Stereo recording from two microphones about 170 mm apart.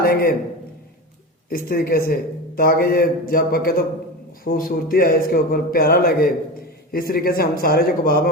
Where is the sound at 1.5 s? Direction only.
60° left (ahead or behind).